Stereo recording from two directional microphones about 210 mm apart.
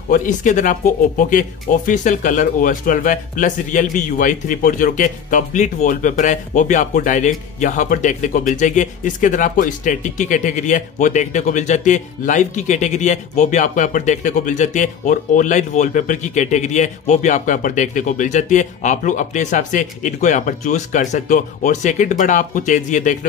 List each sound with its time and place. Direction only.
0.1 s speech: 40° left (ahead or behind)